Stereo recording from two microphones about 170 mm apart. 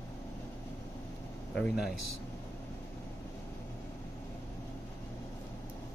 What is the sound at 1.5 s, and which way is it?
Speech, centre (ahead or behind).